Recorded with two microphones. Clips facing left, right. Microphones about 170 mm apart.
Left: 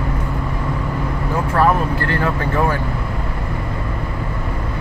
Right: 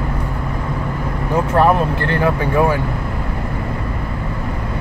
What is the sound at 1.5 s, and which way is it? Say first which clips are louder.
Vehicle: right 2 dB; 20° right (ahead or behind).